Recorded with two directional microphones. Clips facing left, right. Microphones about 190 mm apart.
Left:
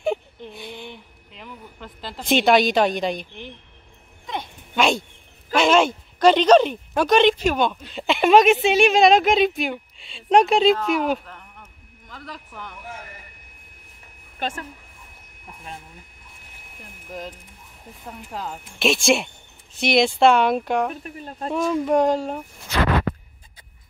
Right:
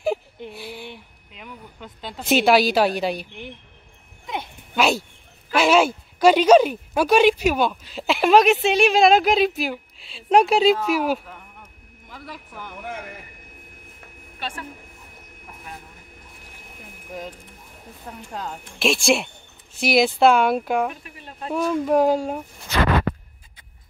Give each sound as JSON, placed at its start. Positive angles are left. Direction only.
{"t": 0.4, "sound": "speech", "side_deg": -5}
{"t": 4.3, "sound": "dog", "side_deg": -5}
{"t": 5.5, "sound": "a woman's voice", "side_deg": -5}
{"t": 18.0, "sound": "a woman's voice", "side_deg": 0}
{"t": 20.9, "sound": "speech", "side_deg": 40}
{"t": 21.5, "sound": "a woman's voice", "side_deg": -5}